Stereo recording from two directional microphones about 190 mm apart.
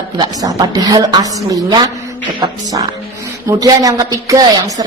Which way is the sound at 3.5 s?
20° right (ahead or behind).